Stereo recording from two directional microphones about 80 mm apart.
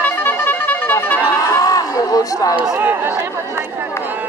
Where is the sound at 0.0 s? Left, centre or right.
Left.